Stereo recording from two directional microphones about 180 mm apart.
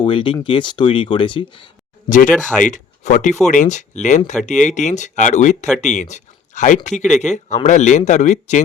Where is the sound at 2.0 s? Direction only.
45° left (ahead or behind).